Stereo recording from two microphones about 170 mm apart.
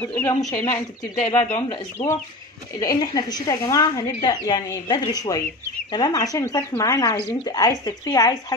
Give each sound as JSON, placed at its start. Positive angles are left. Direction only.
{"t": 0.0, "sound": "speech", "side_deg": 10}